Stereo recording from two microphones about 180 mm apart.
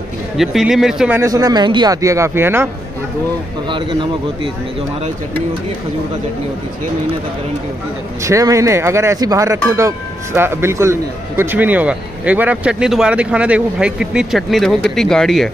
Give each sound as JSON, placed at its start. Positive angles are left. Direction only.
{"t": 0.4, "sound": "a man's voice", "side_deg": 0}
{"t": 1.2, "sound": "speech", "side_deg": -20}
{"t": 3.6, "sound": "speech", "side_deg": -25}
{"t": 8.2, "sound": "speech", "side_deg": -15}